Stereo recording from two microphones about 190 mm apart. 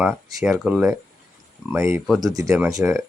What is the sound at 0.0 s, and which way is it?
Speech, centre (ahead or behind).